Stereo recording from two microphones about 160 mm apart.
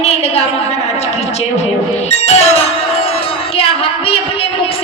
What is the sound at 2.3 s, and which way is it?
Music, 45° left (ahead or behind).